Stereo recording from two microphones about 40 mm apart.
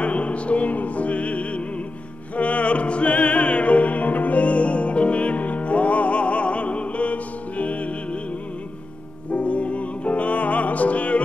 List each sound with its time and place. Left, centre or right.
0.0 s opera: left
9.3 s music: left